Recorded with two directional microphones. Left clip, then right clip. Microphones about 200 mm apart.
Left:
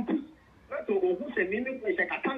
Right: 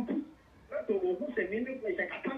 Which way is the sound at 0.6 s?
50° left (ahead or behind).